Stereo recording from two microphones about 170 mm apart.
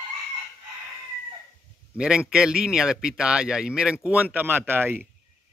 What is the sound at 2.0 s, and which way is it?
Speech, 5° right (ahead or behind).